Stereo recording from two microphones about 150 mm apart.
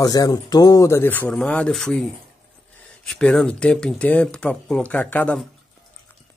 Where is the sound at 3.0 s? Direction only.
5° left (ahead or behind).